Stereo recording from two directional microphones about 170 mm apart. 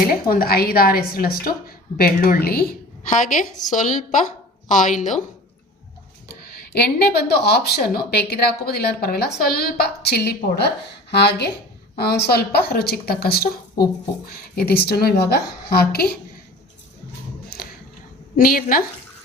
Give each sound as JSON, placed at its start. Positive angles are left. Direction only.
{"t": 0.0, "sound": "a woman's voice", "side_deg": 60}
{"t": 6.7, "sound": "a woman's voice", "side_deg": 70}
{"t": 17.5, "sound": "a sound", "side_deg": 60}
{"t": 18.3, "sound": "speech", "side_deg": 55}